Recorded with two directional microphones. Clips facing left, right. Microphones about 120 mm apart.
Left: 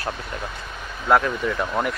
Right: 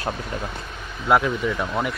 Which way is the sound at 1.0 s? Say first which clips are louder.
Even; 5° right (ahead or behind).